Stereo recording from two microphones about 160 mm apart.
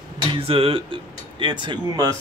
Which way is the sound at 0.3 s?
35° right (ahead or behind).